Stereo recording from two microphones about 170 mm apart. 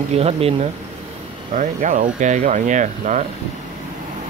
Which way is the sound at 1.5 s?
45° right (ahead or behind).